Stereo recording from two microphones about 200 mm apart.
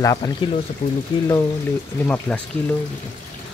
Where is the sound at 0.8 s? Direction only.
35° left (ahead or behind).